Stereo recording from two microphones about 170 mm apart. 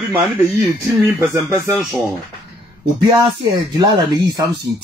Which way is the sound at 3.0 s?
25° right (ahead or behind).